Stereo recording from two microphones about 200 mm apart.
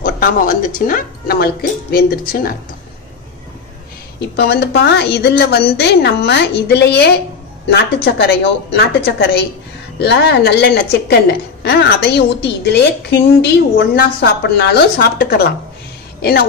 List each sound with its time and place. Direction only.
0.0 s speech: 45° left (ahead or behind)
4.2 s a woman's voice: 55° left (ahead or behind)